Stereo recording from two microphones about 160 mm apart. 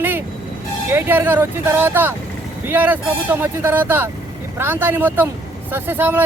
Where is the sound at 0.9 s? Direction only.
15° right (ahead or behind).